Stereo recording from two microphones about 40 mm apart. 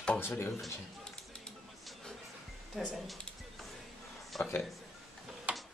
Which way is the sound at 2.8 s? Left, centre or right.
Centre.